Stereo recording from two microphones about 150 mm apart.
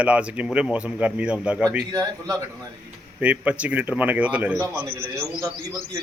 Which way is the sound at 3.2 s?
10° right (ahead or behind).